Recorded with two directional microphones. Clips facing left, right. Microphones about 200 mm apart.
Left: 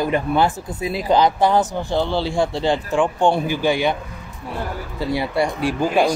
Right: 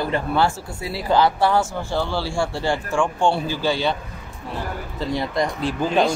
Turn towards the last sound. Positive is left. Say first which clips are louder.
# left 2 dB
turn(degrees=10)  # may be behind; listen again after turning